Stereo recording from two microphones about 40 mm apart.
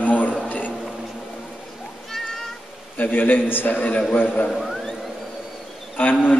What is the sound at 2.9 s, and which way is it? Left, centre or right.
Speech, left.